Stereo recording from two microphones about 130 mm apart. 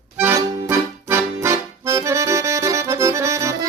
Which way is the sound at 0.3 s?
20° right (ahead or behind).